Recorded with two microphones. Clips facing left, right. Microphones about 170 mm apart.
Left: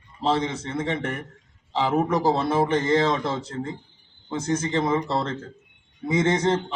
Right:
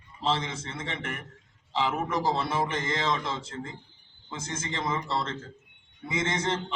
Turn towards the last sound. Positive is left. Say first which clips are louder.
# left 8 dB
turn(degrees=35)  # may be behind; listen again after turning